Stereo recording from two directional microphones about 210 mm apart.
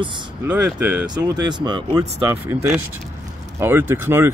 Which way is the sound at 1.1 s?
20° right (ahead or behind).